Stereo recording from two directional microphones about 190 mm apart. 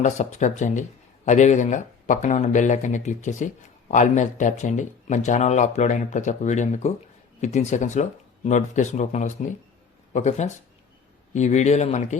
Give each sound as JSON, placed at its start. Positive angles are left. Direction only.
{"t": 0.0, "sound": "speech", "side_deg": 40}